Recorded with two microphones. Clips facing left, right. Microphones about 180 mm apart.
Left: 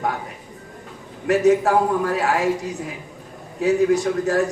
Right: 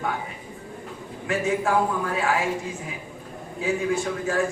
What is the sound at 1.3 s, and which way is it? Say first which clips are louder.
A man's voice: left 7 dB; 40° left (ahead or behind).